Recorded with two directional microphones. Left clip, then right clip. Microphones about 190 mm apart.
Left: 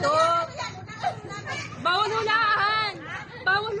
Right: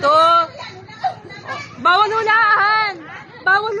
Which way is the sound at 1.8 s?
60° right (ahead or behind).